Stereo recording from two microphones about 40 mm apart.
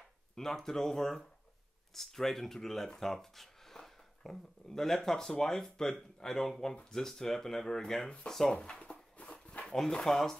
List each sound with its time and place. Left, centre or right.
0.4 s speech: centre
8.5 s a sound: left
9.8 s speech: centre